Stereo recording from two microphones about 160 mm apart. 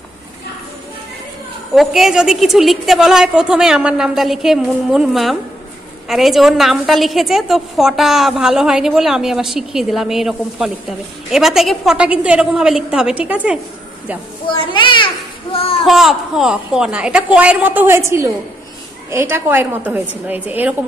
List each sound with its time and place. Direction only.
1.8 s a woman's voice: centre (ahead or behind)
14.5 s a child's voice: 30° left (ahead or behind)
15.8 s a woman's voice: centre (ahead or behind)